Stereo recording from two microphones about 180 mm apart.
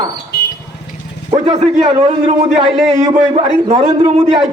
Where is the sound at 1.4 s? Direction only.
35° right (ahead or behind).